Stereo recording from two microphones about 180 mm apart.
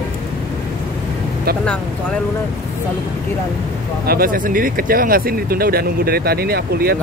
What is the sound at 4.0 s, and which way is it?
Speech, 55° right (ahead or behind).